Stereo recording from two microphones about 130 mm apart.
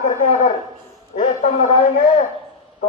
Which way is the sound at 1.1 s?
70° left (ahead or behind).